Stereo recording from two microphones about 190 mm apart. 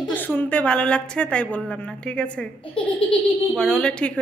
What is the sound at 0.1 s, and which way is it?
A woman's voice, 10° left (ahead or behind).